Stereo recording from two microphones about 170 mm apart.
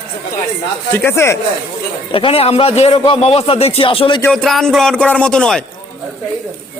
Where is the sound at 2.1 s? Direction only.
35° left (ahead or behind).